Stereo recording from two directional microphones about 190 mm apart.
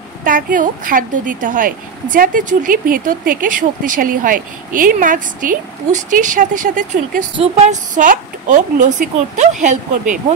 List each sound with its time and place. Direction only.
0.2 s a woman's voice: 45° right (ahead or behind)